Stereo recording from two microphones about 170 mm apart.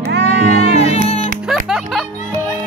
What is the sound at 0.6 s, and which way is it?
Music, 40° left (ahead or behind).